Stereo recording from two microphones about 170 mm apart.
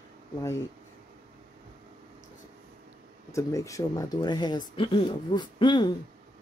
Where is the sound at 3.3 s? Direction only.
20° left (ahead or behind).